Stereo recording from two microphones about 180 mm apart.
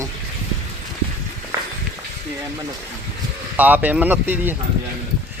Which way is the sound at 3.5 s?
10° right (ahead or behind).